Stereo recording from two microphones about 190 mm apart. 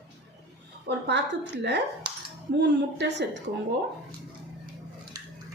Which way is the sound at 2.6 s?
65° right (ahead or behind).